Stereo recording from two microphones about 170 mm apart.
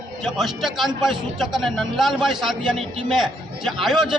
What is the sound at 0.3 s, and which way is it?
A woman's voice, centre (ahead or behind).